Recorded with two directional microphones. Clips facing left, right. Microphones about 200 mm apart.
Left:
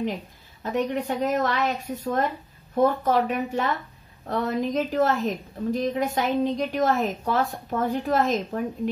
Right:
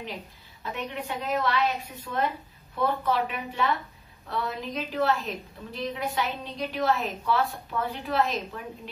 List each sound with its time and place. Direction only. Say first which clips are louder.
0.6 s a woman's voice: left 9 dB; 40° left (ahead or behind)